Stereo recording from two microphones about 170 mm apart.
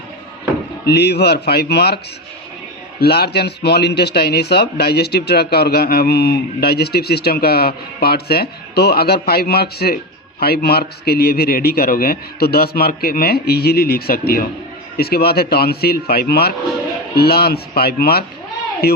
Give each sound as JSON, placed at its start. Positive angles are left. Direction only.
{"t": 0.9, "sound": "speech", "side_deg": 75}
{"t": 3.0, "sound": "a man's voice", "side_deg": 70}